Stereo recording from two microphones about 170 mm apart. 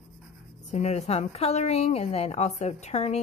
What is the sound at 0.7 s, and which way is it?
A woman's voice, 40° left (ahead or behind).